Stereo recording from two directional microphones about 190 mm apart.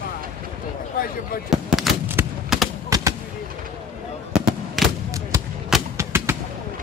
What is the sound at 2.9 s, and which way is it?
Artillery fire, 20° right (ahead or behind).